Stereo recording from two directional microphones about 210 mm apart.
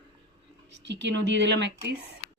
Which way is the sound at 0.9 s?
55° right (ahead or behind).